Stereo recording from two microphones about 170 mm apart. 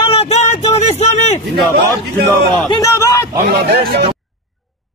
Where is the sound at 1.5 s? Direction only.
70° right (ahead or behind).